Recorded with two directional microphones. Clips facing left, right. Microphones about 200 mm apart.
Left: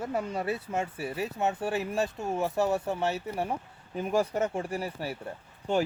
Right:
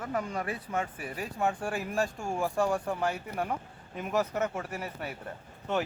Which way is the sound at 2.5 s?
25° left (ahead or behind).